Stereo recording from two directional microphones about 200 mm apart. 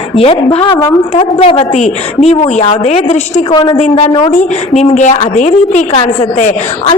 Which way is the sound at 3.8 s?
35° left (ahead or behind).